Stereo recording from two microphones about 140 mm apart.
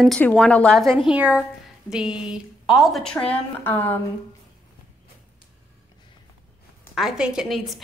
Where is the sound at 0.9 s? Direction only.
5° right (ahead or behind); by 4.0 s 15° left (ahead or behind).